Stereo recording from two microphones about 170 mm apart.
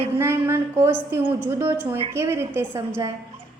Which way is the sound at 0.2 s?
15° right (ahead or behind).